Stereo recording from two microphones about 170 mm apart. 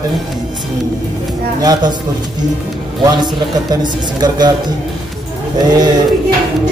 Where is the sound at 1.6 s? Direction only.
25° right (ahead or behind).